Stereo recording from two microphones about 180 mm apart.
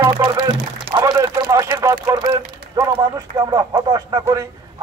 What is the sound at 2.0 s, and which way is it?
Speech, 25° right (ahead or behind).